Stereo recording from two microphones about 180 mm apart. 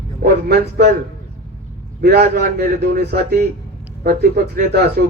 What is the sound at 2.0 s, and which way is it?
A man's voice, 65° right (ahead or behind).